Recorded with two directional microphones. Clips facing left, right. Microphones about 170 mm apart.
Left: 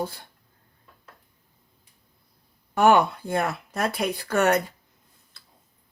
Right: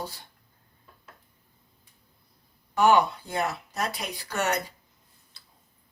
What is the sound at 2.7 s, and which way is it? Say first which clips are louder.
Speech: left 2 dB; 55° left (ahead or behind).